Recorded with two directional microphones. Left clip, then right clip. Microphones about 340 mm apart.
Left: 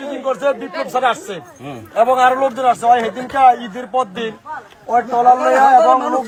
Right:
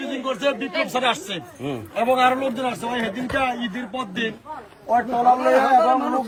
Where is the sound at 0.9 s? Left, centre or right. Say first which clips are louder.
Left 9 dB; centre.